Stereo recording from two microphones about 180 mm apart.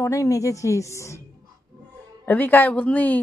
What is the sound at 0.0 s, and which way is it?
A woman's voice, 15° left (ahead or behind).